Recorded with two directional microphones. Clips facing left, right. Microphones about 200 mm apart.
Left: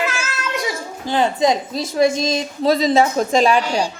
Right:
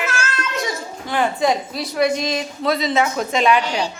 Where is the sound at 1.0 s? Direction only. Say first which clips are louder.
Left 2 dB; 25° left (ahead or behind).